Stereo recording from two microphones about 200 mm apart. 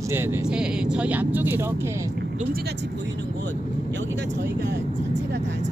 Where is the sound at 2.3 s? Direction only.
50° right (ahead or behind).